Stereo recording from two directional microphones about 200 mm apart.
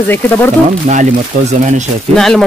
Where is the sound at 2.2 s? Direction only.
Centre (ahead or behind).